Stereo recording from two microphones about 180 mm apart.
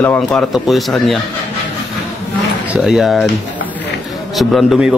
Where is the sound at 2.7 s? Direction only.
5° right (ahead or behind).